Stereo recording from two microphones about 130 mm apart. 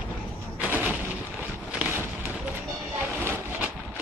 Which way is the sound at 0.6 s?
10° right (ahead or behind).